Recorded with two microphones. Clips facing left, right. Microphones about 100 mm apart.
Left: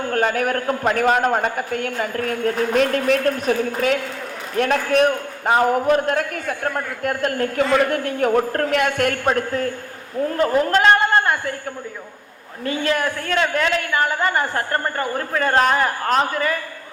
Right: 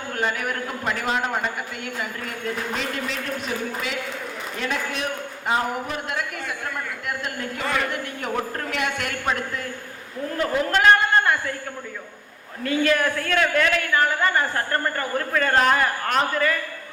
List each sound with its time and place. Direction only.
0.1 s a man's voice: 50° left (ahead or behind); by 11.5 s 30° left (ahead or behind)
12.6 s a woman's voice: 25° left (ahead or behind)